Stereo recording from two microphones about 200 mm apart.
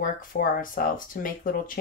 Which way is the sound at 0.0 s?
45° left (ahead or behind).